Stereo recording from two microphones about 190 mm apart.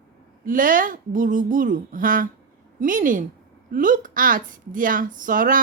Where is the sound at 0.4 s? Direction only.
45° right (ahead or behind).